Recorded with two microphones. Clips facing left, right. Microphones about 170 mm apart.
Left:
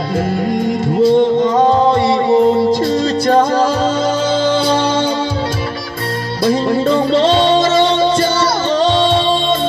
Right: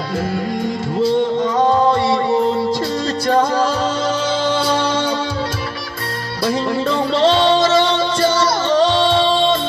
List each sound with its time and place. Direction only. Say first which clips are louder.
0.5 s music: left 5 dB; 15° left (ahead or behind)
4.6 s music: left 4 dB; 20° left (ahead or behind)
6.4 s music: left 5 dB; 20° left (ahead or behind)